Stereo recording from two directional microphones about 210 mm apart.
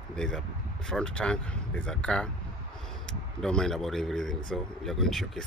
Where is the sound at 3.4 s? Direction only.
5° left (ahead or behind).